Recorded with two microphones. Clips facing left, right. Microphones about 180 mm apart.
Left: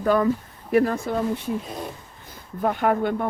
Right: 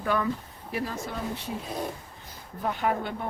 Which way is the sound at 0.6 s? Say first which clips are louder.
Left 12 dB; 55° left (ahead or behind).